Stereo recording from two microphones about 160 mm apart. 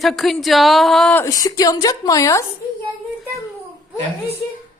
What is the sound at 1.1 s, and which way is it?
A woman's voice, 20° left (ahead or behind).